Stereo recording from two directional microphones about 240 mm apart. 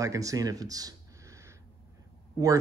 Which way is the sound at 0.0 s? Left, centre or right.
Centre.